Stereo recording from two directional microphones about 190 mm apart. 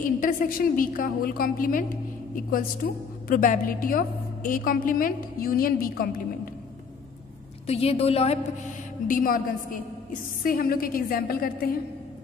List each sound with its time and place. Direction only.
0.2 s a woman's voice: 45° left (ahead or behind)
7.6 s a woman's voice: 30° left (ahead or behind)
9.0 s a woman's voice: 45° left (ahead or behind)